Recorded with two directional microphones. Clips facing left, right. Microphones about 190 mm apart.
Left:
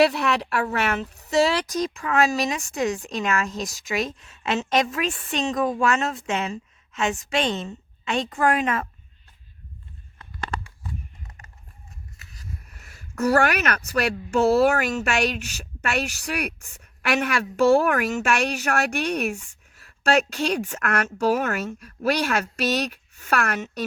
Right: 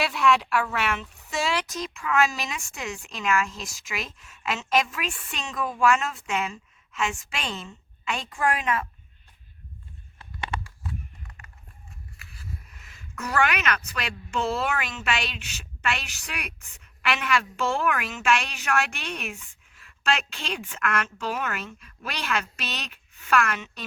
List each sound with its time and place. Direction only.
0.0 s speech: 40° left (ahead or behind)
11.3 s run: 40° left (ahead or behind)
12.2 s speech: 40° left (ahead or behind)